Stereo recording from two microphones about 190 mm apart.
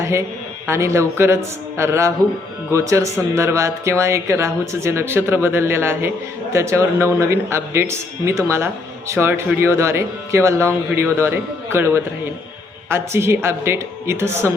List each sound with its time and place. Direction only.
0.0 s a man's voice: 15° right (ahead or behind)